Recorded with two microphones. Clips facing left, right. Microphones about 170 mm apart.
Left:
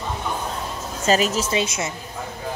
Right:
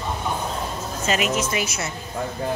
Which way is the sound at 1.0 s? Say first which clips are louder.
Left 3 dB; 35° left (ahead or behind).